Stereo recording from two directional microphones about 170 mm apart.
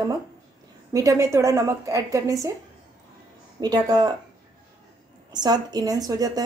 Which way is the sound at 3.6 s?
25° right (ahead or behind).